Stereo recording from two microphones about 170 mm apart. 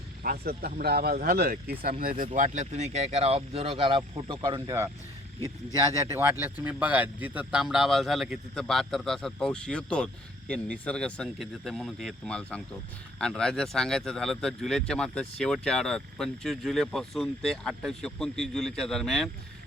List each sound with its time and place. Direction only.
0.2 s speech: 65° right (ahead or behind)
2.0 s speech: 55° right (ahead or behind); by 4.9 s 20° right (ahead or behind)
6.1 s speech: 15° right (ahead or behind); by 19.3 s centre (ahead or behind)